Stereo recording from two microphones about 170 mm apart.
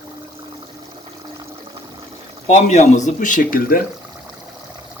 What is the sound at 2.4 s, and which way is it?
Speech, 40° left (ahead or behind).